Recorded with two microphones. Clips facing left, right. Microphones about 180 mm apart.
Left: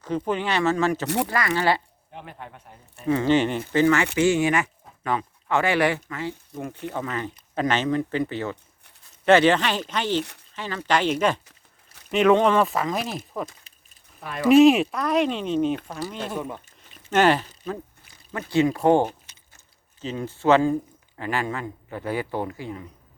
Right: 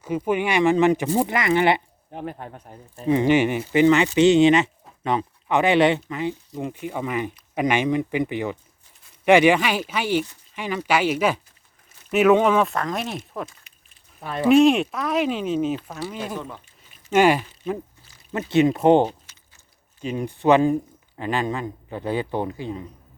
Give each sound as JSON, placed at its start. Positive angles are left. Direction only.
{"t": 0.0, "sound": "speech", "side_deg": -10}
{"t": 1.0, "sound": "speech", "side_deg": 75}
{"t": 1.3, "sound": "speech", "side_deg": -20}
{"t": 2.1, "sound": "speech", "side_deg": -40}
{"t": 3.0, "sound": "speech", "side_deg": -20}
{"t": 14.5, "sound": "speech", "side_deg": 0}
{"t": 18.3, "sound": "speech", "side_deg": -20}